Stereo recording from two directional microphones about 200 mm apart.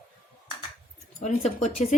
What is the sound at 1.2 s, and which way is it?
Speech, 35° left (ahead or behind).